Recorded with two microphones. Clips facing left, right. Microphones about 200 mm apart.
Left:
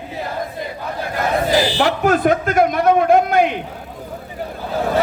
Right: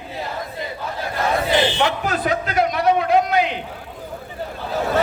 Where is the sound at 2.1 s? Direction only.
50° left (ahead or behind).